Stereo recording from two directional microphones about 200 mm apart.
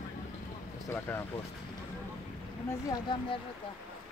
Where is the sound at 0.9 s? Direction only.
10° left (ahead or behind).